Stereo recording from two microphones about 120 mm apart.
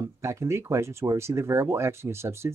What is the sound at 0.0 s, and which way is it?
Speech, 25° right (ahead or behind).